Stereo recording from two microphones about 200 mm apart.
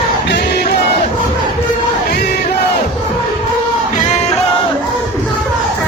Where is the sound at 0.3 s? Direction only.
55° left (ahead or behind).